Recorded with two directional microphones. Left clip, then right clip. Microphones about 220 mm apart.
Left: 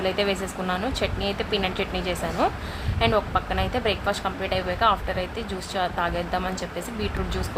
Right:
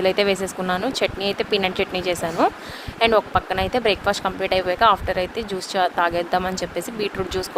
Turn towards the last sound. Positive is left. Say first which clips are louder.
# right 5 dB
turn(degrees=-30)  # may be behind; listen again after turning